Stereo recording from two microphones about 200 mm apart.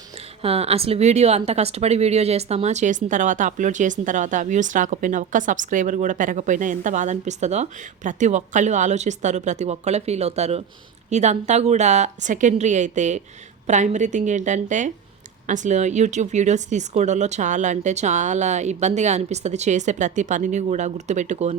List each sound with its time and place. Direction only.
0.4 s speech: 30° right (ahead or behind)